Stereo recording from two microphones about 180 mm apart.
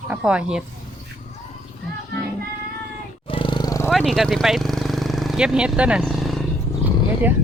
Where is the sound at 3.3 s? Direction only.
25° left (ahead or behind).